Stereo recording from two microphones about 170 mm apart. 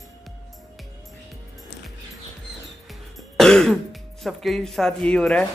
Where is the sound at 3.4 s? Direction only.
5° left (ahead or behind).